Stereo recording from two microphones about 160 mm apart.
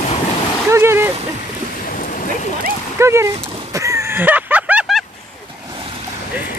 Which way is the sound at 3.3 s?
35° right (ahead or behind).